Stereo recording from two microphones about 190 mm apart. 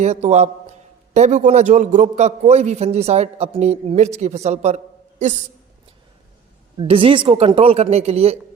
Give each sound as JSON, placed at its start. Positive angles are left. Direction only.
{"t": 0.0, "sound": "a man's voice", "side_deg": -35}
{"t": 6.7, "sound": "a man's voice", "side_deg": -30}